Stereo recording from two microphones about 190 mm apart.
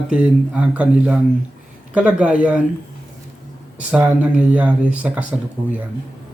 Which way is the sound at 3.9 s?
5° right (ahead or behind).